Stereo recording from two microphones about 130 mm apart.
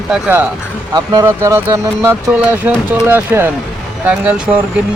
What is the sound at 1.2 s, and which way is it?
Speech, 20° right (ahead or behind).